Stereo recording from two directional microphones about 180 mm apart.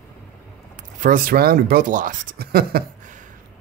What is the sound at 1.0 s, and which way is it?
Speech, 50° right (ahead or behind).